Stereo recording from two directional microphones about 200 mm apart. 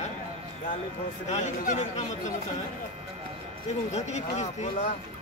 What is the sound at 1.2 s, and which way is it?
Speech, 35° left (ahead or behind).